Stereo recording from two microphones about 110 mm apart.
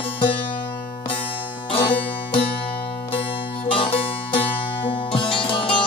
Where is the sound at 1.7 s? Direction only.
55° left (ahead or behind).